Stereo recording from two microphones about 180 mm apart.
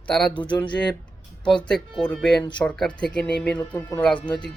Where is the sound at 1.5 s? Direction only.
5° left (ahead or behind).